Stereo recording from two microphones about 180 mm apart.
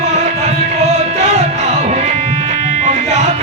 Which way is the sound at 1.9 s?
35° right (ahead or behind).